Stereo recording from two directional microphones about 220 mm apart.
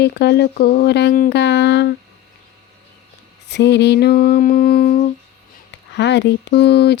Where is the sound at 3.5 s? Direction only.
50° left (ahead or behind).